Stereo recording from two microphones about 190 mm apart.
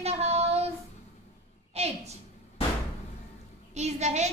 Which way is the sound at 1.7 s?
35° right (ahead or behind).